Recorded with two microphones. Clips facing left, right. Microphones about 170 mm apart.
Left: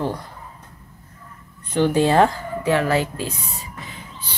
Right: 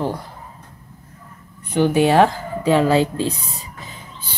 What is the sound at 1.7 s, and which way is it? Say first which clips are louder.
Speech: right 2 dB; 10° right (ahead or behind).